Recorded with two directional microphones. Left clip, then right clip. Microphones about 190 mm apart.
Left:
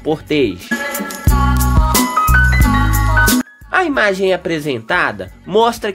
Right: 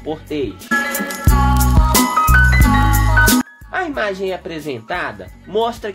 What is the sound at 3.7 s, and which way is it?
Speech, 45° left (ahead or behind).